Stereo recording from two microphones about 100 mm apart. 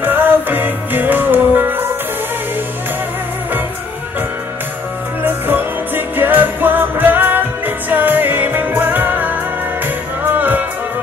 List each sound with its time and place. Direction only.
0.0 s music: 20° right (ahead or behind)
5.2 s music: 20° right (ahead or behind)